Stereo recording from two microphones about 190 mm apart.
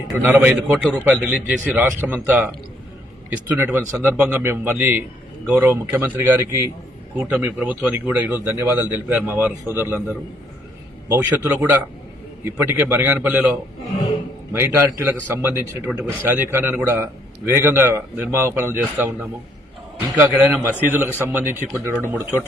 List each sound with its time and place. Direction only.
0.1 s a man's voice: 10° right (ahead or behind)
9.6 s a man's voice: 15° left (ahead or behind)
11.1 s a man's voice: 10° right (ahead or behind)